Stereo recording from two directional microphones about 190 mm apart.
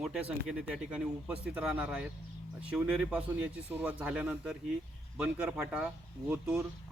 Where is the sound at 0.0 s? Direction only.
5° right (ahead or behind).